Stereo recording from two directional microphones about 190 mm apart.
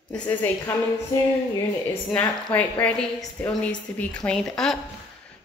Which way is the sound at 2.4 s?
5° left (ahead or behind).